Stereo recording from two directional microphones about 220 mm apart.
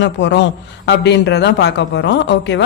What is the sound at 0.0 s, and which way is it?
Speech, 55° left (ahead or behind).